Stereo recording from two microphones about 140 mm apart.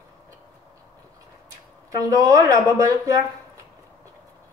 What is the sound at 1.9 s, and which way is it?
A woman's voice, 25° right (ahead or behind).